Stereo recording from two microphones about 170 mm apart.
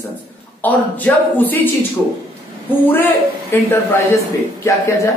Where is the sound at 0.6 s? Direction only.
10° left (ahead or behind).